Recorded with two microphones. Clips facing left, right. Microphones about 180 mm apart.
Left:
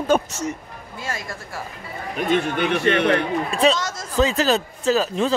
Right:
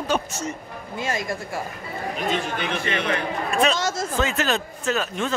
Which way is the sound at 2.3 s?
60° left (ahead or behind).